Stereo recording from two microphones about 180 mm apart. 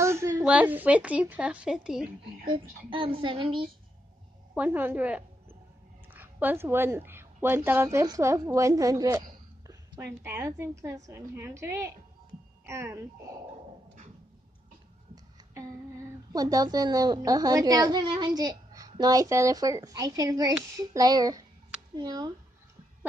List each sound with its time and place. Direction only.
0.0 s a sound: 15° right (ahead or behind)
0.4 s a woman's voice: 5° right (ahead or behind)
2.9 s a woman's voice: 30° right (ahead or behind)
4.6 s a woman's voice: 10° right (ahead or behind)
15.5 s a woman's voice: 20° right (ahead or behind)